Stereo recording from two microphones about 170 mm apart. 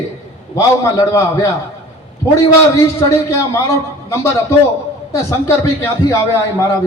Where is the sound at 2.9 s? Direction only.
20° left (ahead or behind).